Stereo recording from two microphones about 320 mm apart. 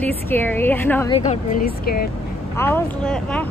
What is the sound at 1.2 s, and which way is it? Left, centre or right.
Speech, left.